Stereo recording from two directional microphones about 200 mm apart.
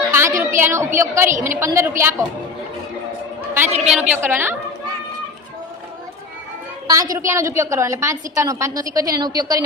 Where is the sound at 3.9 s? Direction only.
5° right (ahead or behind).